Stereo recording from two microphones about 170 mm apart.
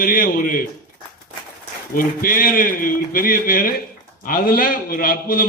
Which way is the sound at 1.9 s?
55° left (ahead or behind).